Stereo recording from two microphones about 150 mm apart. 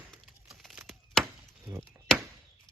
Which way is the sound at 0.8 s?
Centre (ahead or behind).